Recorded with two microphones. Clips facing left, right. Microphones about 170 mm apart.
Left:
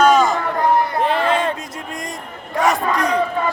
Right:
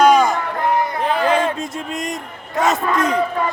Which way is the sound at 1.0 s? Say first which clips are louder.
Right 1 dB; centre (ahead or behind).